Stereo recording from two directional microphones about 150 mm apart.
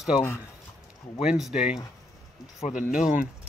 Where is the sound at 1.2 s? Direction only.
5° right (ahead or behind).